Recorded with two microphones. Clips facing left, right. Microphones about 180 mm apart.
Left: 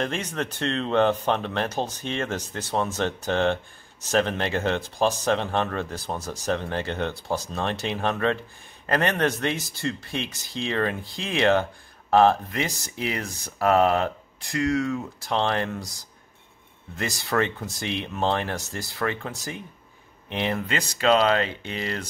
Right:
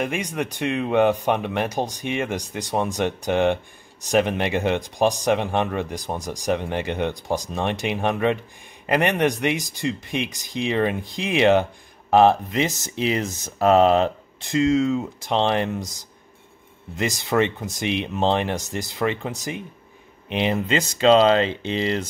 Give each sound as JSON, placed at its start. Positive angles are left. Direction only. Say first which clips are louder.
{"t": 0.0, "sound": "speech", "louder": "right 2 dB", "side_deg": -10}